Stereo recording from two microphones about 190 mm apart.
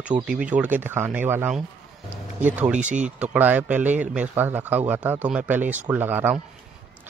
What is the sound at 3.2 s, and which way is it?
A man's voice, 10° right (ahead or behind).